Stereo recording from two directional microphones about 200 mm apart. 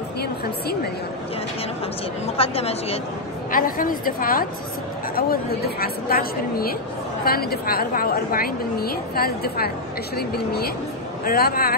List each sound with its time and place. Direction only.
2.2 s a woman's voice: 30° left (ahead or behind)
3.5 s a woman's voice: 45° left (ahead or behind)